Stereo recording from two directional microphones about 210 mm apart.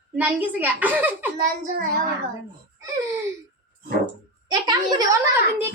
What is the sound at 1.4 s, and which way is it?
Speech, 40° right (ahead or behind).